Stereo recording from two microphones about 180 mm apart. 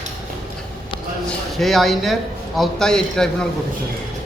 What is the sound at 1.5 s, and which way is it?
Speech, centre (ahead or behind).